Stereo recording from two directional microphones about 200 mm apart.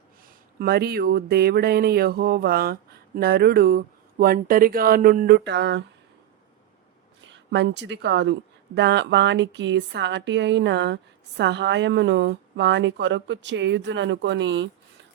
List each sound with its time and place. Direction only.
0.6 s speech: 50° right (ahead or behind)
7.3 s speech: 60° right (ahead or behind)